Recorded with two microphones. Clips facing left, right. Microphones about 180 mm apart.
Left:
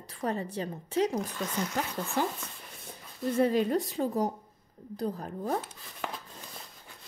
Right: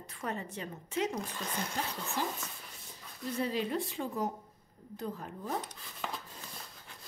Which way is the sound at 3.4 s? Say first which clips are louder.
Left 7 dB; 50° left (ahead or behind).